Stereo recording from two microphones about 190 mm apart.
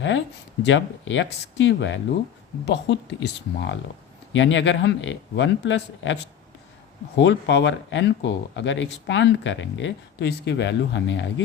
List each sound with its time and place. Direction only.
0.6 s speech: 75° left (ahead or behind)
7.2 s speech: 70° left (ahead or behind)